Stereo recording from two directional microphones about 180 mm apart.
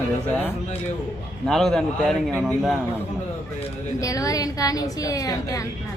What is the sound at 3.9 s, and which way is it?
A woman's voice, 20° left (ahead or behind).